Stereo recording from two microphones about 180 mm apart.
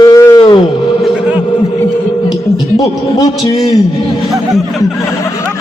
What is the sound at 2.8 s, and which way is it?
Speech, 20° left (ahead or behind).